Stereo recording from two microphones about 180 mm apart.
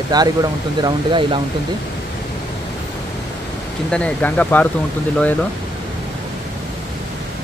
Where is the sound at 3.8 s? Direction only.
5° left (ahead or behind).